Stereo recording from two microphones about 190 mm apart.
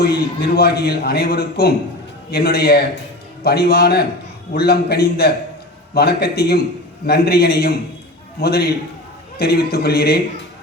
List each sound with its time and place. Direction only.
0.0 s a man's voice: 55° left (ahead or behind)